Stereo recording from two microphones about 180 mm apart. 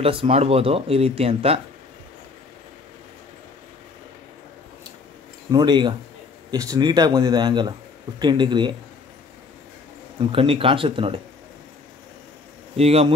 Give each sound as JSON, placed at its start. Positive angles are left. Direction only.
{"t": 0.0, "sound": "speech", "side_deg": -30}
{"t": 5.5, "sound": "speech", "side_deg": -25}
{"t": 10.3, "sound": "speech", "side_deg": -30}
{"t": 12.7, "sound": "speech", "side_deg": -35}